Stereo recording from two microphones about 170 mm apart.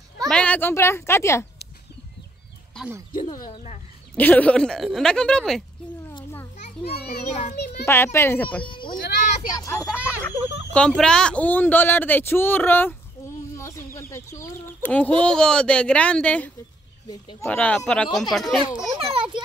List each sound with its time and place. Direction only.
0.3 s speech: 5° left (ahead or behind)
4.1 s speech: 10° left (ahead or behind)
7.8 s speech: 15° left (ahead or behind)
8.6 s speech: 30° left (ahead or behind)
9.0 s vehicle: 50° left (ahead or behind)
9.5 s speech: 20° left (ahead or behind)
10.0 s speech: 10° left (ahead or behind)
13.6 s a sound: 15° left (ahead or behind)
13.9 s speech: 15° left (ahead or behind)
17.1 s speech: 25° left (ahead or behind)
17.5 s speech: 5° left (ahead or behind)
18.9 s a sound: 30° right (ahead or behind)